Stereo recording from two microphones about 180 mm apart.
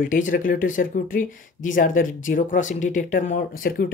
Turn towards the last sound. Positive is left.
turn(degrees=55)  # may be behind; listen again after turning